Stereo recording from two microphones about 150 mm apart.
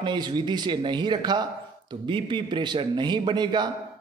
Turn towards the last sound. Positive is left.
turn(degrees=-30)  # may be behind; listen again after turning